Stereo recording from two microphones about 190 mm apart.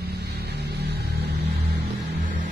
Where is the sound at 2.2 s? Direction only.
40° right (ahead or behind).